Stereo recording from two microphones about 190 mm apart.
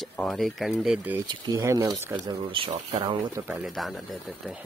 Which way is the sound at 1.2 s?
20° right (ahead or behind).